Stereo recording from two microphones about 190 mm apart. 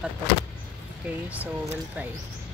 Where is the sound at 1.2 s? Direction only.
5° right (ahead or behind).